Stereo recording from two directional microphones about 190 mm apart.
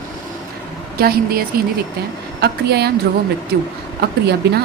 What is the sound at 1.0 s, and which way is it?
A woman's voice, 50° right (ahead or behind).